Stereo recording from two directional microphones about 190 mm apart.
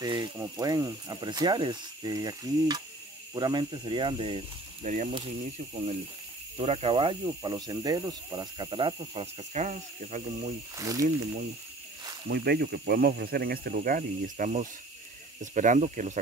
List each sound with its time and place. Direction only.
0.0 s speech: 20° right (ahead or behind); by 5.1 s 35° right (ahead or behind)
6.6 s speech: 30° right (ahead or behind)
10.8 s speech: 15° right (ahead or behind)
12.3 s speech: 60° right (ahead or behind); by 16.2 s 40° right (ahead or behind)